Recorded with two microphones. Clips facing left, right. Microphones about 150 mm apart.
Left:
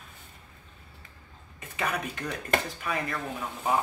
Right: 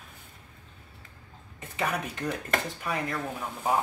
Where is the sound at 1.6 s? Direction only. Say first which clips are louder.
Right 1 dB; 25° right (ahead or behind).